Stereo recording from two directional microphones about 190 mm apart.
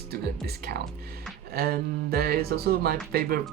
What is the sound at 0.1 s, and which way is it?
Speech, 55° right (ahead or behind).